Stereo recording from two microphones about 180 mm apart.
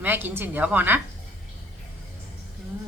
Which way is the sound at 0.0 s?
10° right (ahead or behind).